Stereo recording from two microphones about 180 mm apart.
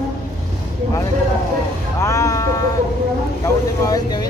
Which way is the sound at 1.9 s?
15° left (ahead or behind).